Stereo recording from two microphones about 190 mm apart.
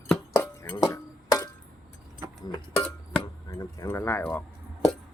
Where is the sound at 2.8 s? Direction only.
5° left (ahead or behind).